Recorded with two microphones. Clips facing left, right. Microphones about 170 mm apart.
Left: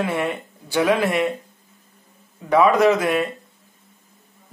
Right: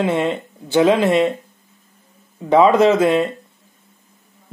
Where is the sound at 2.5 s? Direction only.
25° right (ahead or behind).